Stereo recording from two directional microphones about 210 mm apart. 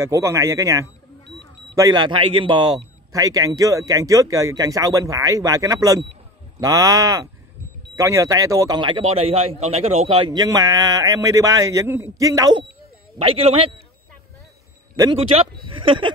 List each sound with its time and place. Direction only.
0.0 s speech: 15° right (ahead or behind)
15.0 s speech: 25° right (ahead or behind)